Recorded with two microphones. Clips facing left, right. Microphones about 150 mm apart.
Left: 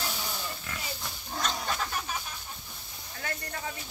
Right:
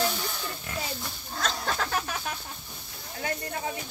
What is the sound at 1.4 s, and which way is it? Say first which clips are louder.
Cat: right 2 dB; 90° right.